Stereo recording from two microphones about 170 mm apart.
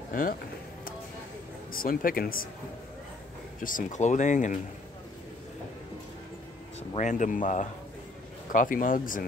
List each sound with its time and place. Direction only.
0.1 s speech: 55° left (ahead or behind)
1.7 s speech: 55° left (ahead or behind)
3.6 s speech: 50° left (ahead or behind)
7.0 s speech: 50° left (ahead or behind)